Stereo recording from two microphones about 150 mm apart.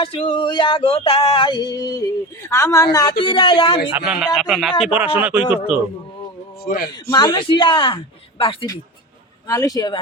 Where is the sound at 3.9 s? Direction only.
5° right (ahead or behind).